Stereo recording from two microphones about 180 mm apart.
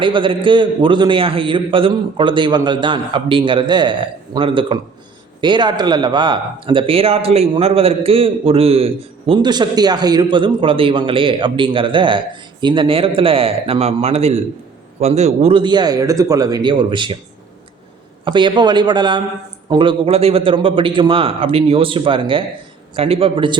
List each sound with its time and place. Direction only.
0.0 s speech: 25° right (ahead or behind)
18.3 s a man's voice: 25° right (ahead or behind)